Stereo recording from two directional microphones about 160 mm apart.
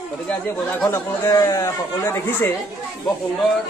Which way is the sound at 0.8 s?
15° left (ahead or behind).